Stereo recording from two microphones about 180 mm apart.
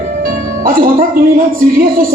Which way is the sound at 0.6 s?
50° right (ahead or behind).